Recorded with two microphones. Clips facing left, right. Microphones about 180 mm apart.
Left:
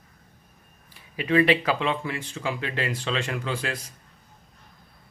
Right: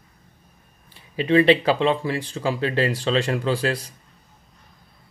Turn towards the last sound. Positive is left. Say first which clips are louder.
# right 7 dB
turn(degrees=-35)  # may be behind; listen again after turning